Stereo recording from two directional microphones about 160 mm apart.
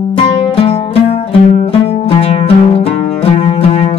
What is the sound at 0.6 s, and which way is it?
Music, 40° left (ahead or behind).